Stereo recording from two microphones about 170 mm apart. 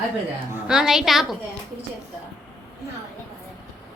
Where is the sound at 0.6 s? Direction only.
5° right (ahead or behind).